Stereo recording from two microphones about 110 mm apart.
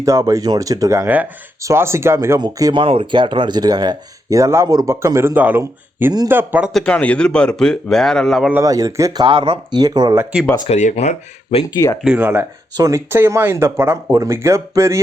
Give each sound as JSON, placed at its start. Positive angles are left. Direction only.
{"t": 0.0, "sound": "speech", "side_deg": -30}
{"t": 2.4, "sound": "speech", "side_deg": -35}
{"t": 2.8, "sound": "speech", "side_deg": -55}
{"t": 6.7, "sound": "speech", "side_deg": 10}
{"t": 8.6, "sound": "speech", "side_deg": -30}
{"t": 9.2, "sound": "speech", "side_deg": -50}
{"t": 10.7, "sound": "speech", "side_deg": 80}
{"t": 12.0, "sound": "speech", "side_deg": -15}
{"t": 12.7, "sound": "speech", "side_deg": -30}